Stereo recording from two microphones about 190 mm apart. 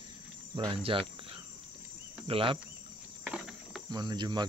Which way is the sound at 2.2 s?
30° right (ahead or behind).